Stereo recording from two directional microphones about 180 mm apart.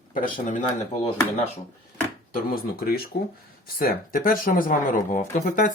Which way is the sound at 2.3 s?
55° left (ahead or behind).